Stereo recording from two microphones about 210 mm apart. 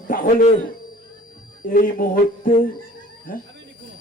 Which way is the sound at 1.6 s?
40° left (ahead or behind).